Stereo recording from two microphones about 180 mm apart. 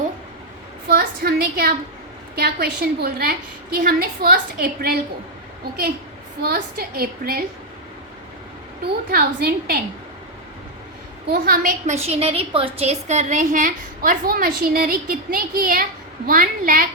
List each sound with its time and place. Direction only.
0.9 s a sound: 60° right (ahead or behind)
2.3 s a woman's voice: 60° right (ahead or behind)
6.4 s a woman's voice: 55° right (ahead or behind)
9.1 s a woman's voice: 55° right (ahead or behind)
11.3 s a woman's voice: 55° right (ahead or behind)
12.0 s a woman's voice: 35° right (ahead or behind); by 16.8 s 50° right (ahead or behind)